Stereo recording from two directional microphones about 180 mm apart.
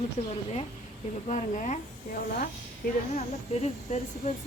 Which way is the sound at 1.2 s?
40° left (ahead or behind).